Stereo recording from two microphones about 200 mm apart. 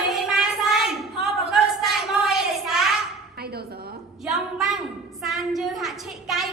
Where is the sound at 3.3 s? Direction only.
50° right (ahead or behind).